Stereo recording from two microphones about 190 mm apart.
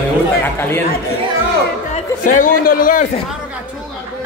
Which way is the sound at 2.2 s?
45° left (ahead or behind).